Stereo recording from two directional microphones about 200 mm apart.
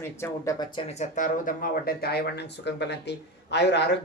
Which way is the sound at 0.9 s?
40° left (ahead or behind).